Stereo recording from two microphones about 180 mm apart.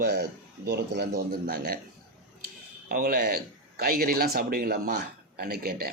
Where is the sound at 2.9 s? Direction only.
50° right (ahead or behind).